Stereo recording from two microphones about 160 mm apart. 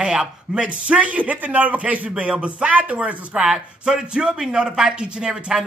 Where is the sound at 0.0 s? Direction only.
5° right (ahead or behind).